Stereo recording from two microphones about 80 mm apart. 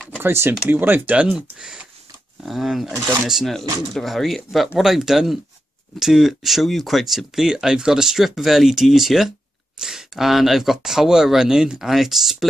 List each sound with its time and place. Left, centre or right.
0.2 s speech: right; by 12.4 s centre